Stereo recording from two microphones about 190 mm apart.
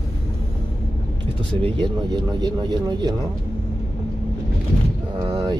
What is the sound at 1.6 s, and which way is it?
Speech, 25° right (ahead or behind).